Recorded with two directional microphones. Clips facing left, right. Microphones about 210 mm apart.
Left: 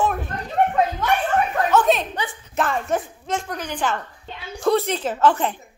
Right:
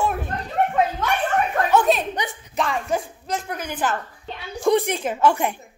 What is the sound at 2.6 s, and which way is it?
A woman's voice, centre (ahead or behind).